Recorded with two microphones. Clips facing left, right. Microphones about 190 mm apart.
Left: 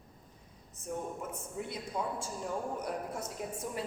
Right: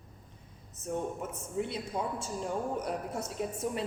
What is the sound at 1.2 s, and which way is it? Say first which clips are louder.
A man's voice: right 5 dB; 20° right (ahead or behind).